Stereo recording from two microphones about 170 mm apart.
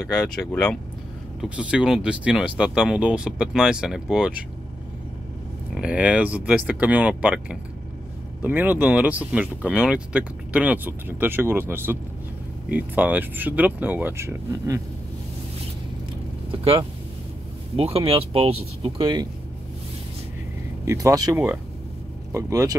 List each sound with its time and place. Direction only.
0.0 s speech: 5° left (ahead or behind)
1.4 s speech: 5° right (ahead or behind)
5.8 s speech: 5° right (ahead or behind)
17.7 s speech: 35° right (ahead or behind)
20.8 s speech: 20° right (ahead or behind)